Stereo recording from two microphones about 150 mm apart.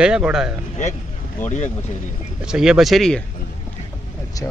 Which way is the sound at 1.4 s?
50° left (ahead or behind).